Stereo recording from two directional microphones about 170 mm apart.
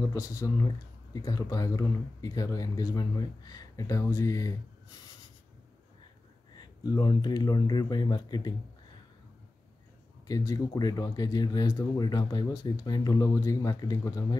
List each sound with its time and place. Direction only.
0.1 s speech: 20° left (ahead or behind)
6.5 s speech: 25° left (ahead or behind)
10.2 s speech: 20° left (ahead or behind)